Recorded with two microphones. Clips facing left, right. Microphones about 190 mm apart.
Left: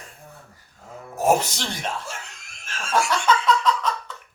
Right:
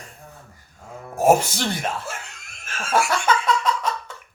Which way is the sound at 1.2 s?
10° right (ahead or behind).